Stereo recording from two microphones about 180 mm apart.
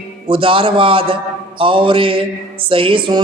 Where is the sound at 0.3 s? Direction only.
30° right (ahead or behind).